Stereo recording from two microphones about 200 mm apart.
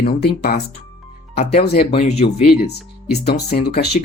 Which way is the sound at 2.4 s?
55° left (ahead or behind).